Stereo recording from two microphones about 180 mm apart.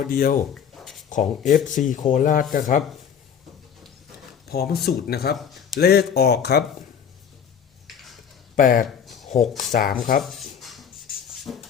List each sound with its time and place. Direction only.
0.0 s speech: 55° left (ahead or behind)
4.4 s speech: 60° left (ahead or behind)
5.4 s speech: centre (ahead or behind)
5.8 s speech: 60° left (ahead or behind)
8.5 s speech: 55° left (ahead or behind)
9.0 s a sound: centre (ahead or behind)
9.7 s speech: 50° left (ahead or behind)
10.2 s writing: centre (ahead or behind)